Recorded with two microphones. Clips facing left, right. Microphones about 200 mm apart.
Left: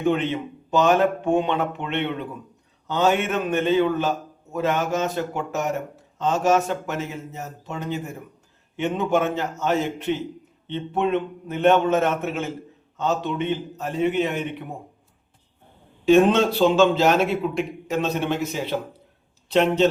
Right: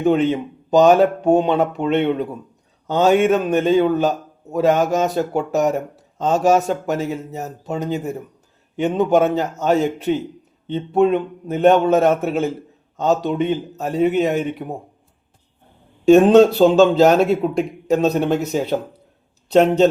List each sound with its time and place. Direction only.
0.0 s a man's voice: 40° right (ahead or behind)
16.0 s a man's voice: 40° right (ahead or behind)